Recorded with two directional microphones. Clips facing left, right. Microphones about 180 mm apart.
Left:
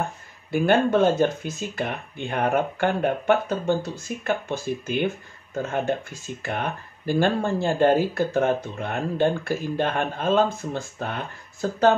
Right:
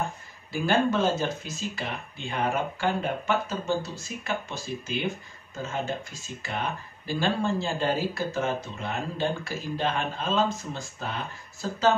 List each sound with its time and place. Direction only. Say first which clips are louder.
0.5 s speech: left 5 dB; 60° left (ahead or behind)